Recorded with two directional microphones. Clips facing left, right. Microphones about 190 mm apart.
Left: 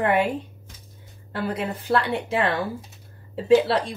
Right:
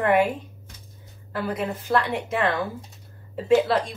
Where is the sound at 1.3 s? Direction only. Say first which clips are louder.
Even; 30° left (ahead or behind).